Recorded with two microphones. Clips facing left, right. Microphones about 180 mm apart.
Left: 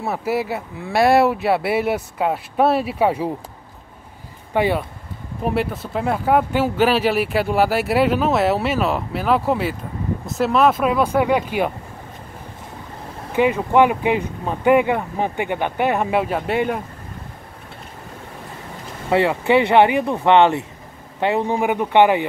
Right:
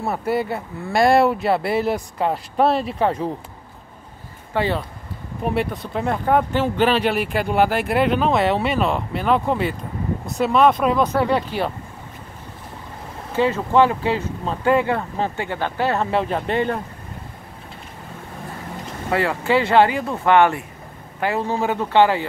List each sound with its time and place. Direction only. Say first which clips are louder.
0.0 s speech: even; 5° left (ahead or behind)
4.6 s speech: left 3 dB; 10° left (ahead or behind)
5.4 s speech: left 1 dB; centre (ahead or behind)
13.3 s speech: left 2 dB; 15° left (ahead or behind)
19.0 s speech: left 3 dB; 20° left (ahead or behind)